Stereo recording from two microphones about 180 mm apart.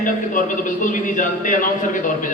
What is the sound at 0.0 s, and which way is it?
A man's voice, 45° left (ahead or behind).